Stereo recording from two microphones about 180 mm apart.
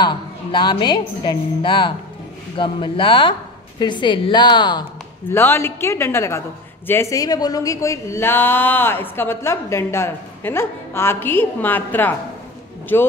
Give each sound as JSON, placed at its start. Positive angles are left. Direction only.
{"t": 0.0, "sound": "a woman's voice", "side_deg": 25}
{"t": 5.3, "sound": "speech", "side_deg": 10}